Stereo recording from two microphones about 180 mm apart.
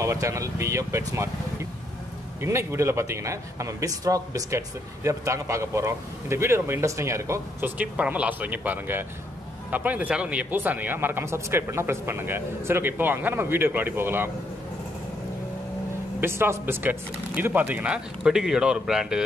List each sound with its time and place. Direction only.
0.0 s a man's voice: 15° right (ahead or behind)
16.2 s a man's voice: 15° right (ahead or behind)